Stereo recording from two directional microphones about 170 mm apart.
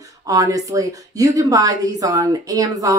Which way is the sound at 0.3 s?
20° right (ahead or behind).